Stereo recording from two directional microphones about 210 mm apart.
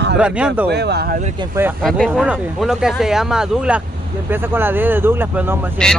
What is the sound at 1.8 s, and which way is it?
Speech, centre (ahead or behind).